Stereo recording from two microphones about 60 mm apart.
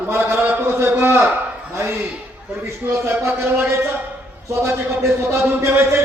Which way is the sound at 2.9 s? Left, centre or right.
Right.